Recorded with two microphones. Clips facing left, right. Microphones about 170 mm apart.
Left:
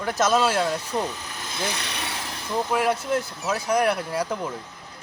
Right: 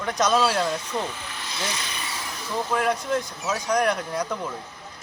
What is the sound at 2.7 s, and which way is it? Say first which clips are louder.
Speech: left 1 dB; 5° left (ahead or behind).